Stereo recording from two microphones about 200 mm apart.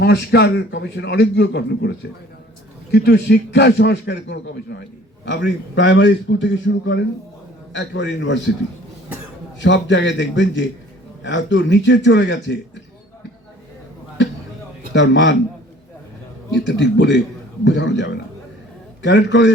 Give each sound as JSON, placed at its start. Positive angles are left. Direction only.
{"t": 0.0, "sound": "a man's voice", "side_deg": 55}
{"t": 9.6, "sound": "a man's voice", "side_deg": 65}
{"t": 14.9, "sound": "a man's voice", "side_deg": 65}
{"t": 16.6, "sound": "a man's voice", "side_deg": 65}